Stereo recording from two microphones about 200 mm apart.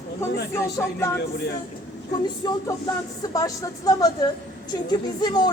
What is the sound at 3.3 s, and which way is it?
A woman's voice, 15° left (ahead or behind).